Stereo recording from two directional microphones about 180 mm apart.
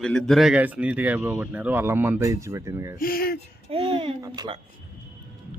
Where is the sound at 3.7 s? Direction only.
30° right (ahead or behind).